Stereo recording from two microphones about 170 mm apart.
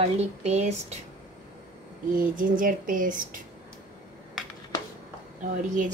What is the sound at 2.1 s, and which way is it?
Speech, 55° right (ahead or behind).